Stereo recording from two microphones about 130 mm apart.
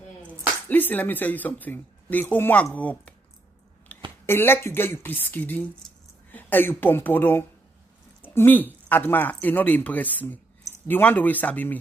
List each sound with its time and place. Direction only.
0.7 s speech: 15° left (ahead or behind)
3.9 s a sound: 10° left (ahead or behind)
4.3 s speech: 15° left (ahead or behind)